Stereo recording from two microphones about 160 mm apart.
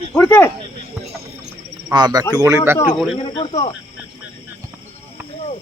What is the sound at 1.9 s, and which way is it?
Speech, 25° right (ahead or behind).